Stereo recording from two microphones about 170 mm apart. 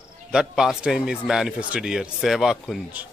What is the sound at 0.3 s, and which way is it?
A man's voice, 5° right (ahead or behind).